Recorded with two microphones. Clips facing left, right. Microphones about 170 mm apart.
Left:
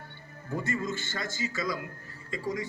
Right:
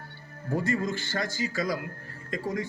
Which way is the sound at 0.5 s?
55° right (ahead or behind).